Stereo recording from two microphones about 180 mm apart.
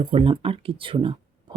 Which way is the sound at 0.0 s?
30° right (ahead or behind).